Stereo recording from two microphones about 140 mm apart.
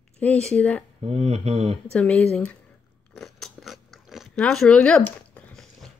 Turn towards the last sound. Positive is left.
turn(degrees=5)  # may be behind; listen again after turning